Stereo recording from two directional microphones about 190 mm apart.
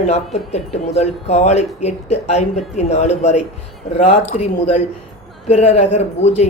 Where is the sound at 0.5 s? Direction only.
35° left (ahead or behind).